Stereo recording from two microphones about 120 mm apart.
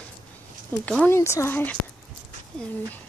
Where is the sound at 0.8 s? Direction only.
10° left (ahead or behind).